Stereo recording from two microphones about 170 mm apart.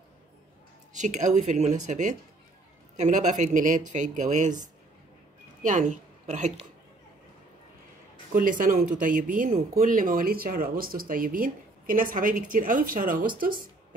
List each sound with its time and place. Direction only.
0.9 s a woman's voice: 45° right (ahead or behind)
8.3 s speech: 55° right (ahead or behind)